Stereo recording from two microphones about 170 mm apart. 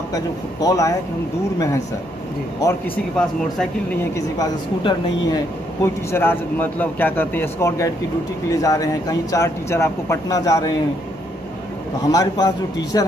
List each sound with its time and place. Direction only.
0.1 s speech: 20° left (ahead or behind)
3.2 s speech: 5° left (ahead or behind)
4.4 s speech: 25° left (ahead or behind)
6.1 s a man's voice: 10° left (ahead or behind)
12.0 s speech: 20° left (ahead or behind)